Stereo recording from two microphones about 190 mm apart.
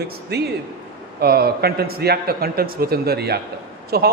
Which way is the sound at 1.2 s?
55° right (ahead or behind).